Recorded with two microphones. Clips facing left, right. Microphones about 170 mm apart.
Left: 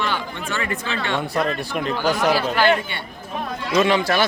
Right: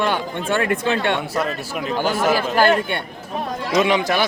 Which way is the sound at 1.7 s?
5° right (ahead or behind).